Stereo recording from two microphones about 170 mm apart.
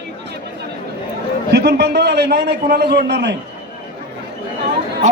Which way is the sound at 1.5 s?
75° right (ahead or behind).